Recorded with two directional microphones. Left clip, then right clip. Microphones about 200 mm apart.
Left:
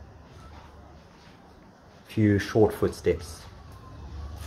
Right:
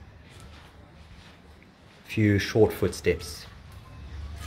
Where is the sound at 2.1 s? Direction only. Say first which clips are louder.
Even; 10° right (ahead or behind).